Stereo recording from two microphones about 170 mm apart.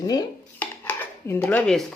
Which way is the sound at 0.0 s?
20° left (ahead or behind).